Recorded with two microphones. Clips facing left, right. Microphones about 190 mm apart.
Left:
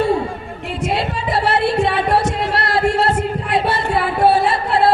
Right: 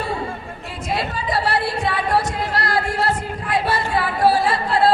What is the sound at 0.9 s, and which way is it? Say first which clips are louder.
Singing: left 2 dB; 25° left (ahead or behind).